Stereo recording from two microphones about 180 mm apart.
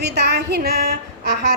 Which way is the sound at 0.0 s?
65° right (ahead or behind).